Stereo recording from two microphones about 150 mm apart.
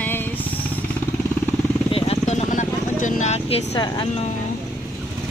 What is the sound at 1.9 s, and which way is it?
Vehicle, 40° left (ahead or behind).